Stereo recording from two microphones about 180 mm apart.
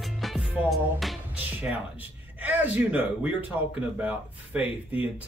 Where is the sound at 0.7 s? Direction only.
Centre (ahead or behind).